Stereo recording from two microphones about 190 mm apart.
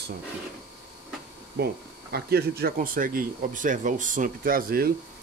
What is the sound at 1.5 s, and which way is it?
Speech, 55° right (ahead or behind).